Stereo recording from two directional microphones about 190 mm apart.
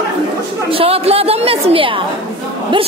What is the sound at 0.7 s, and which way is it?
Speech, 30° right (ahead or behind).